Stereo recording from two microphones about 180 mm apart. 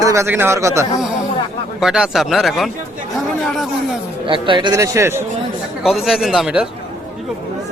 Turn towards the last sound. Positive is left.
turn(degrees=-5)  # may be behind; listen again after turning